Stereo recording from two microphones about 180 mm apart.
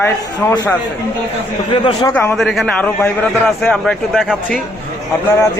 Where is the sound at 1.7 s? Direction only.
25° left (ahead or behind).